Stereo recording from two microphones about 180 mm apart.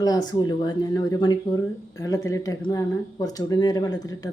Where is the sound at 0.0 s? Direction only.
20° left (ahead or behind).